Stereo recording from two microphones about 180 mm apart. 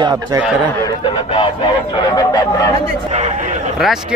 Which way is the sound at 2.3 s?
20° left (ahead or behind).